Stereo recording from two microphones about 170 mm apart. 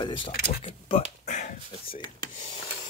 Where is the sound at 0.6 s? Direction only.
40° left (ahead or behind).